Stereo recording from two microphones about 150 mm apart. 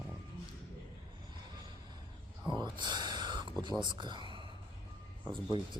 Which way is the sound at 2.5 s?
30° right (ahead or behind).